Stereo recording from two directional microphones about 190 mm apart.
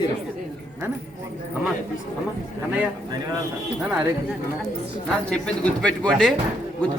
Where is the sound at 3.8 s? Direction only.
10° right (ahead or behind).